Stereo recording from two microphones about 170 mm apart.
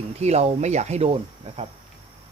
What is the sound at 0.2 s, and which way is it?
Speech, 40° right (ahead or behind).